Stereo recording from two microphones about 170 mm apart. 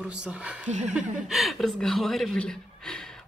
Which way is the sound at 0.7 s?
45° right (ahead or behind).